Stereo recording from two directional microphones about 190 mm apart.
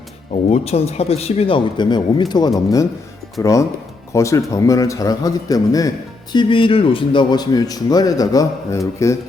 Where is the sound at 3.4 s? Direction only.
15° left (ahead or behind).